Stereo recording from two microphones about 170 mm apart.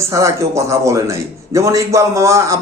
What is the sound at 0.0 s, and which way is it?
A man's voice, 15° right (ahead or behind).